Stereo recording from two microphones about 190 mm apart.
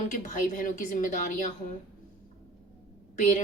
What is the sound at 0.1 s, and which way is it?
A woman's voice, 45° left (ahead or behind).